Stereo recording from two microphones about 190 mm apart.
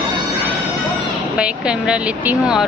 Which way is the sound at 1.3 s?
5° right (ahead or behind).